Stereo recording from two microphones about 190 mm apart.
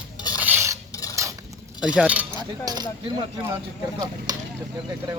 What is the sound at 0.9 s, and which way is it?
Dishes, 20° left (ahead or behind).